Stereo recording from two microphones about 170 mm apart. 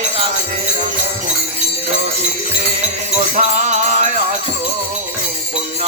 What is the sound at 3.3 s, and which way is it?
Music, 45° right (ahead or behind).